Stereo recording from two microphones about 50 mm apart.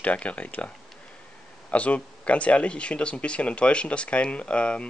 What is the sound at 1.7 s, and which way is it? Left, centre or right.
Speech, left.